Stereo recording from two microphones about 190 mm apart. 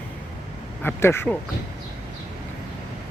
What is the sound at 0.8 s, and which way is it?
Speech, 10° left (ahead or behind).